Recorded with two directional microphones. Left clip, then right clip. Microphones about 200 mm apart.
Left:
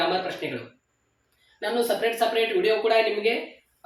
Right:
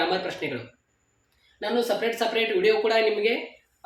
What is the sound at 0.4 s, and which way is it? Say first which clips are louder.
Speech: right 1 dB; 25° right (ahead or behind).